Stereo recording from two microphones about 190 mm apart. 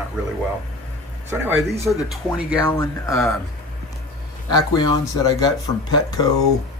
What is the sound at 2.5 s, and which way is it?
Speech, 20° left (ahead or behind).